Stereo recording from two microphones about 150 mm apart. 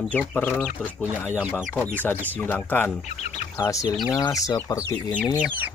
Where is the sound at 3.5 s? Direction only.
20° left (ahead or behind).